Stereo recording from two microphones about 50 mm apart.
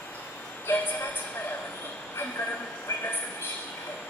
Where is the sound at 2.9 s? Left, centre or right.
Left.